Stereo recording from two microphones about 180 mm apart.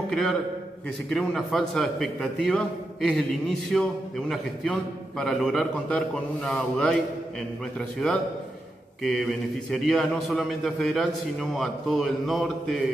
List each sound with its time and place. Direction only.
0.1 s a man's voice: 5° left (ahead or behind)
9.0 s a man's voice: centre (ahead or behind)